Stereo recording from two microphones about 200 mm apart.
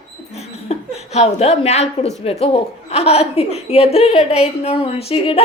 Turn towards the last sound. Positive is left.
turn(degrees=30)  # may be behind; listen again after turning